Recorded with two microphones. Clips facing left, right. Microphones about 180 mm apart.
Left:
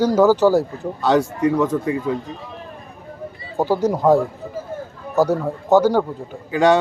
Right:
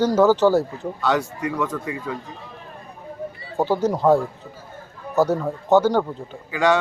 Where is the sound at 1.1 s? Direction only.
25° left (ahead or behind).